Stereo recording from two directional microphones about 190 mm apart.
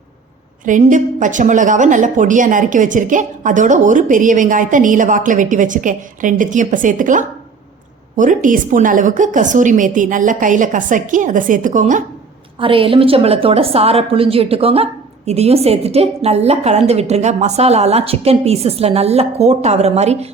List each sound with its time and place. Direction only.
0.6 s a woman's voice: 40° right (ahead or behind)
12.5 s a woman's voice: 30° right (ahead or behind)